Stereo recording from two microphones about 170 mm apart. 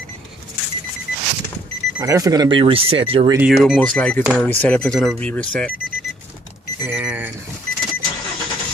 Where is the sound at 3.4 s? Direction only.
5° right (ahead or behind).